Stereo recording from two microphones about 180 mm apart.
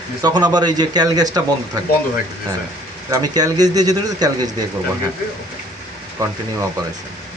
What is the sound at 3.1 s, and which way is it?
Speech, 20° right (ahead or behind).